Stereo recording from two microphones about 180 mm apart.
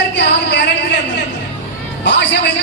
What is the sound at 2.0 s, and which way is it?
Speech, 75° left (ahead or behind).